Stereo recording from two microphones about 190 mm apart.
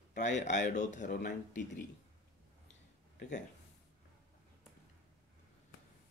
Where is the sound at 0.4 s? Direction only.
40° left (ahead or behind).